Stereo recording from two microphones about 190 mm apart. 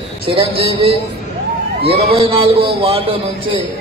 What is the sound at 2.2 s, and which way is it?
Speech, 30° right (ahead or behind).